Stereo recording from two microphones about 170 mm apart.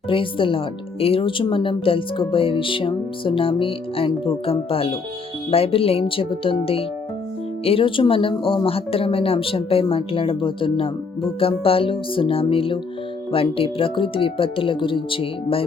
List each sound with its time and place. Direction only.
0.1 s speech: 30° left (ahead or behind)